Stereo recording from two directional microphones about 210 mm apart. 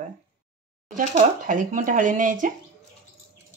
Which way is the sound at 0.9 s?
40° right (ahead or behind).